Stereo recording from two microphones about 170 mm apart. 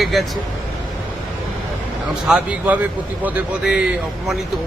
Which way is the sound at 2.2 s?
5° right (ahead or behind).